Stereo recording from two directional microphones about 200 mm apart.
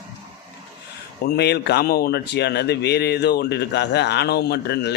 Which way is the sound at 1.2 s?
55° left (ahead or behind).